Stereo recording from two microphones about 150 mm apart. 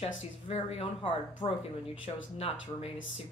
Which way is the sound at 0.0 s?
40° left (ahead or behind).